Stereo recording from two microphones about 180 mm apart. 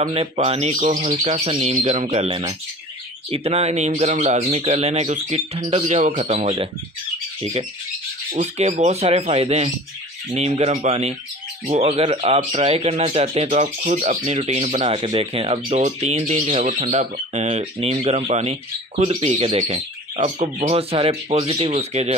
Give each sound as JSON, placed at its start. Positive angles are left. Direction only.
{"t": 0.0, "sound": "speech", "side_deg": -30}
{"t": 8.3, "sound": "speech", "side_deg": -35}